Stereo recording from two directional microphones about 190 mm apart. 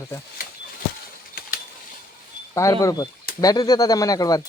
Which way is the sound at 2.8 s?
15° left (ahead or behind).